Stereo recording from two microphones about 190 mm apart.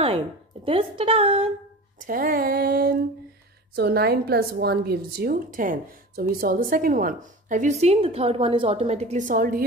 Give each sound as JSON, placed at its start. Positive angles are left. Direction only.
{"t": 0.7, "sound": "a woman's voice", "side_deg": -30}
{"t": 2.0, "sound": "a woman's voice", "side_deg": -50}